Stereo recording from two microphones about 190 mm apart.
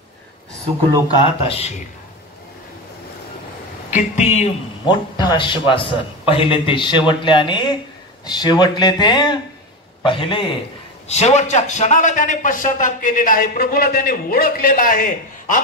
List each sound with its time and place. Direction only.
1.0 s speech: 30° left (ahead or behind)
3.9 s speech: 40° left (ahead or behind)
4.8 s a man's voice: 20° left (ahead or behind); by 15.6 s 45° left (ahead or behind)